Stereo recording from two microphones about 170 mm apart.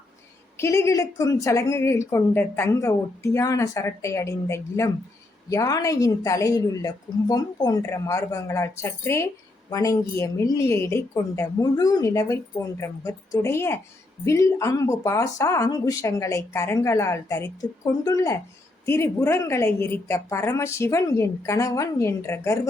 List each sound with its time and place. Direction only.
0.5 s speech: 15° left (ahead or behind)